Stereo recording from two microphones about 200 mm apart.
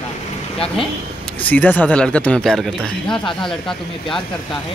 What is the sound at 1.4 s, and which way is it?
Speech, 10° left (ahead or behind).